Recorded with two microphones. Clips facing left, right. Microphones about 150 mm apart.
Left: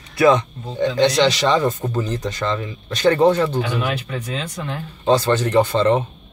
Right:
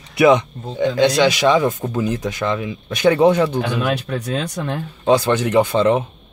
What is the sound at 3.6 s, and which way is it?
Speech, 65° right (ahead or behind).